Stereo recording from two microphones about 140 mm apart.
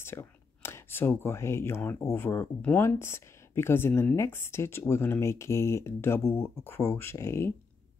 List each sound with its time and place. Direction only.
0.0 s speech: 20° left (ahead or behind)